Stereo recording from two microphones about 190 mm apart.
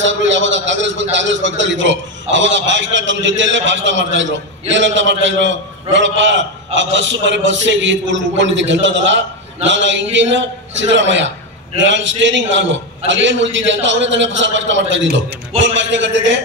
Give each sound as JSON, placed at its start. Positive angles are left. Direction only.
{"t": 0.0, "sound": "a man's voice", "side_deg": -75}